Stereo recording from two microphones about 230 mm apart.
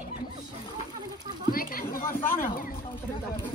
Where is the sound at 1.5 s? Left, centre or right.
Left.